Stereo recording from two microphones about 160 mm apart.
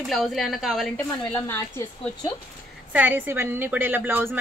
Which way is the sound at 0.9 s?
10° left (ahead or behind).